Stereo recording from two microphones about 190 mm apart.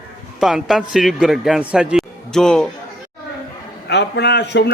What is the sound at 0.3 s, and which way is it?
A man's voice, centre (ahead or behind).